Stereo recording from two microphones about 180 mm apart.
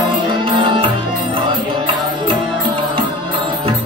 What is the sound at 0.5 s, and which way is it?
Music, 30° right (ahead or behind).